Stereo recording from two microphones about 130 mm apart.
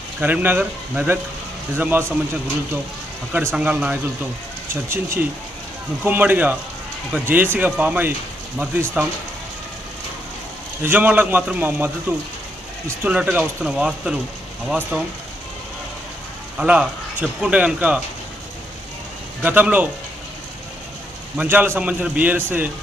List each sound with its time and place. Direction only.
0.2 s speech: 15° right (ahead or behind)
3.3 s speech: 10° right (ahead or behind)
10.8 s speech: 10° right (ahead or behind)
16.6 s speech: 10° right (ahead or behind)
19.4 s speech: 10° right (ahead or behind)
21.3 s speech: 15° right (ahead or behind)